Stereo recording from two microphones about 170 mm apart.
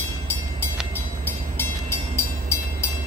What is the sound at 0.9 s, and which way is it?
Train, 10° left (ahead or behind).